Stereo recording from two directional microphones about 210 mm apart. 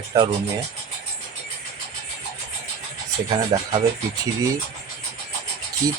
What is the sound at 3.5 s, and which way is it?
Speech, 25° right (ahead or behind).